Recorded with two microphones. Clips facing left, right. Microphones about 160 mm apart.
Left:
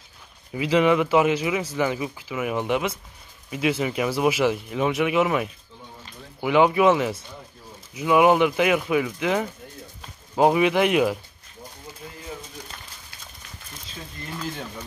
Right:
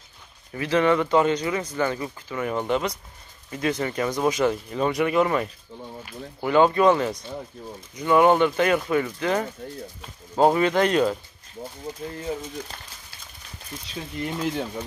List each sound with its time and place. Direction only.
0.5 s speech: 10° left (ahead or behind)